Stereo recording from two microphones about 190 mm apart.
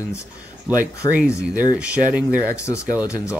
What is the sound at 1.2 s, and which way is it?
Speech, 5° right (ahead or behind).